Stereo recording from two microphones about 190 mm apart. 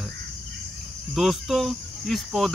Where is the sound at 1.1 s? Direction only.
Centre (ahead or behind).